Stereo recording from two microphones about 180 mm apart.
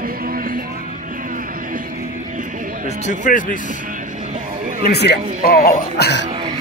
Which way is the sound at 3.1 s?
45° left (ahead or behind).